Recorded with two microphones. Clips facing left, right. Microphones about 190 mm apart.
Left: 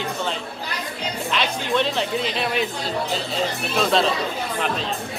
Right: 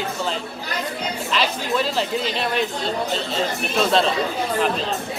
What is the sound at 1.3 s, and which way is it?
Speech, 5° right (ahead or behind).